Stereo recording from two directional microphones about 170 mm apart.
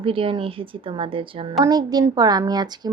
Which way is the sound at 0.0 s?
30° right (ahead or behind).